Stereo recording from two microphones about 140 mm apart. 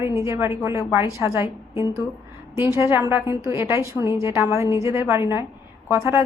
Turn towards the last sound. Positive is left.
turn(degrees=-15)  # may be behind; listen again after turning